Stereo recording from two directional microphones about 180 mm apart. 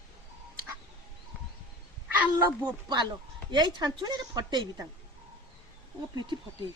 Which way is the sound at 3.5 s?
25° right (ahead or behind).